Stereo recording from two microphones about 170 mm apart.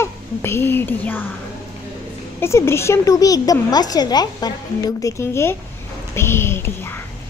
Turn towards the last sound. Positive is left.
turn(degrees=15)  # may be behind; listen again after turning